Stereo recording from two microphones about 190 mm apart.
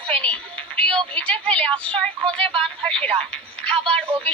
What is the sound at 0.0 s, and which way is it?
A woman's voice, 5° left (ahead or behind).